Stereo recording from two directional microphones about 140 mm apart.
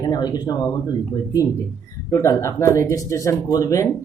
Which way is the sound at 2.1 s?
20° left (ahead or behind).